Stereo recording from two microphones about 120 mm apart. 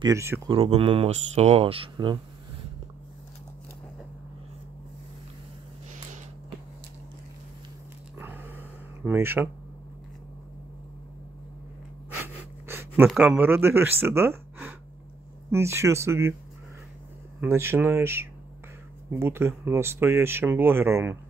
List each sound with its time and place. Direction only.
0.0 s speech: 25° right (ahead or behind)
0.5 s speech: 55° right (ahead or behind)
8.2 s a sound: 15° right (ahead or behind)
9.0 s speech: 20° right (ahead or behind)
12.6 s a sound: 20° right (ahead or behind)
13.2 s speech: 15° right (ahead or behind)
17.4 s speech: 20° right (ahead or behind)